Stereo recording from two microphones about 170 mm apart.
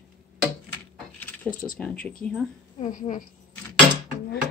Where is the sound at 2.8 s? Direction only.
45° left (ahead or behind).